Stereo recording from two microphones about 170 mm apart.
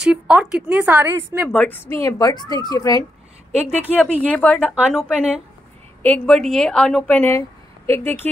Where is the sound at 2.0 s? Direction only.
20° left (ahead or behind).